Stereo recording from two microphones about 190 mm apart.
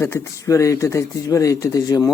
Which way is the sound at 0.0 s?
15° left (ahead or behind).